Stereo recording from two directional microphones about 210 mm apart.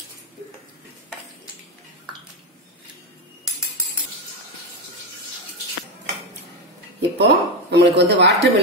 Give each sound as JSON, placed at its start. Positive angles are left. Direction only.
{"t": 7.0, "sound": "speech", "side_deg": -50}